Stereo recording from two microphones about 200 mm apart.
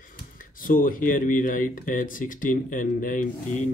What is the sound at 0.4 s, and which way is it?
Speech, 45° left (ahead or behind).